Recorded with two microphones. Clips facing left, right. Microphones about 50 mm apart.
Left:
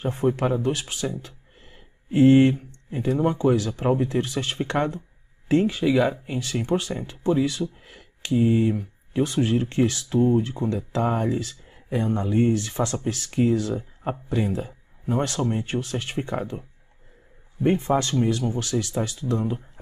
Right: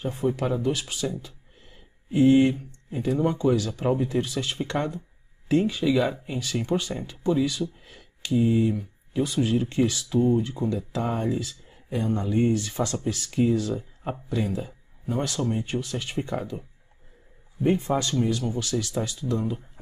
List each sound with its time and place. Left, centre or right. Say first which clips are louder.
0.2 s speech: left 2 dB; left
2.1 s speech: left 3 dB; left
2.5 s speech: left 2 dB; left
17.7 s speech: left 3 dB; left
18.1 s speech: left 2 dB; centre
18.9 s speech: left 2 dB; centre
19.3 s speech: left 2 dB; left